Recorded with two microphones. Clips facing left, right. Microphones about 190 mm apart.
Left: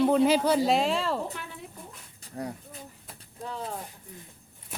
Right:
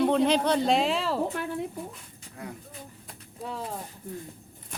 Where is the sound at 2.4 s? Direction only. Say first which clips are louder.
Left 5 dB; 40° left (ahead or behind).